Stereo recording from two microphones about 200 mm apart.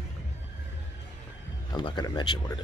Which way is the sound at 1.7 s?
20° left (ahead or behind).